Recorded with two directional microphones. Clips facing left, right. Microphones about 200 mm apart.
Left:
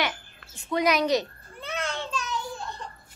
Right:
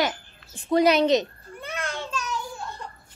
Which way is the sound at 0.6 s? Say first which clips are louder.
Right 5 dB; 30° right (ahead or behind).